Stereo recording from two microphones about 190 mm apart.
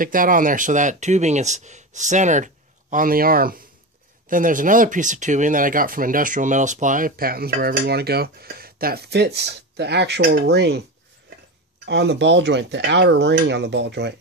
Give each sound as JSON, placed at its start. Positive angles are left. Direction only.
{"t": 0.0, "sound": "speech", "side_deg": -45}
{"t": 11.8, "sound": "speech", "side_deg": -65}